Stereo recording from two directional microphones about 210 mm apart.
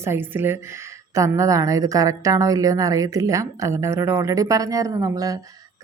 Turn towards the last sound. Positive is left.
turn(degrees=-15)  # may be behind; listen again after turning